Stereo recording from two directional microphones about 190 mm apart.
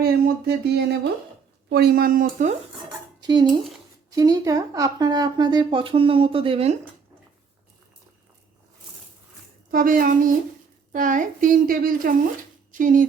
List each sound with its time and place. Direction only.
0.0 s a sound: 55° right (ahead or behind)
1.7 s a woman's voice: 55° right (ahead or behind)
3.2 s speech: 20° right (ahead or behind)
9.7 s a woman's voice: 45° right (ahead or behind)